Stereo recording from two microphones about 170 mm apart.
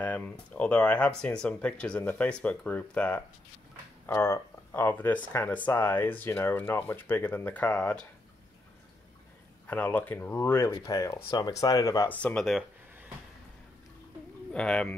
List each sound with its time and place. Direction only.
0.0 s speech: 10° left (ahead or behind)
9.7 s speech: 10° left (ahead or behind)
12.2 s a sound: 5° left (ahead or behind)
14.5 s speech: 5° left (ahead or behind)